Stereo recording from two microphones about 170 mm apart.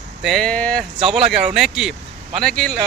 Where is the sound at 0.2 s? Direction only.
Centre (ahead or behind).